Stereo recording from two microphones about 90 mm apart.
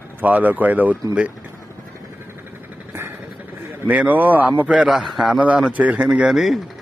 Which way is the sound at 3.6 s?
20° right (ahead or behind).